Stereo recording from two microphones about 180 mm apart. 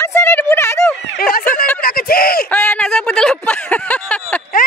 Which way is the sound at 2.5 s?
10° left (ahead or behind).